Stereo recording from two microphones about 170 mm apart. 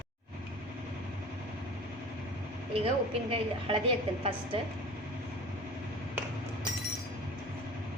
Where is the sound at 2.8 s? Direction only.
35° right (ahead or behind).